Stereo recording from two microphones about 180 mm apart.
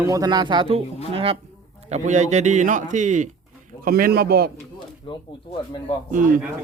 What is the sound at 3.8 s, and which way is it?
Speech, 55° right (ahead or behind).